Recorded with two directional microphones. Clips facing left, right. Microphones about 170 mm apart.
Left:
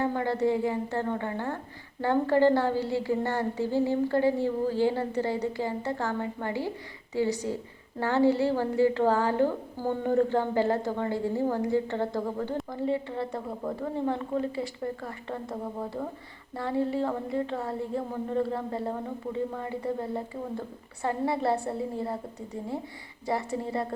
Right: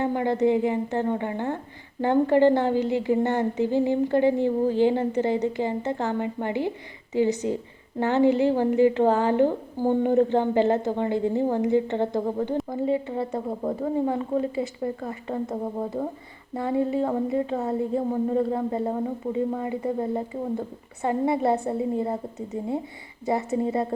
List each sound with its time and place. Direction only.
0.0 s a woman's voice: 20° right (ahead or behind)